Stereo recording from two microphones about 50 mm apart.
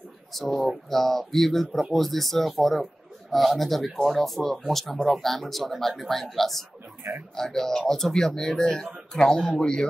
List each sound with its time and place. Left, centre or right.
0.3 s speech: centre
8.5 s speech: left